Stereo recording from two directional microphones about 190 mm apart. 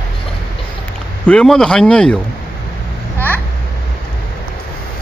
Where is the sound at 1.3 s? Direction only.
5° left (ahead or behind).